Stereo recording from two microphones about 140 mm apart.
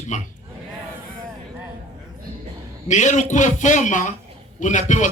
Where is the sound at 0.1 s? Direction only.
60° left (ahead or behind).